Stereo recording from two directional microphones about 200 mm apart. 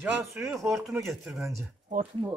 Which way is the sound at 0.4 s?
Centre (ahead or behind).